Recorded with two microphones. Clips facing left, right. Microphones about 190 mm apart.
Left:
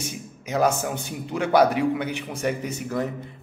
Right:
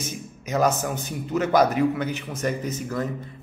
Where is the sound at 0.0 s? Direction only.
10° left (ahead or behind).